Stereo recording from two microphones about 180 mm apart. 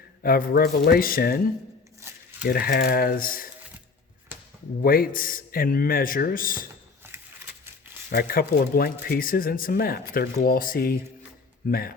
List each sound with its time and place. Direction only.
0.2 s speech: 55° left (ahead or behind)
2.0 s a sound: 15° right (ahead or behind)
2.5 s speech: 55° left (ahead or behind)
4.8 s speech: 55° left (ahead or behind)
7.0 s a sound: 15° right (ahead or behind)
8.1 s speech: 55° left (ahead or behind)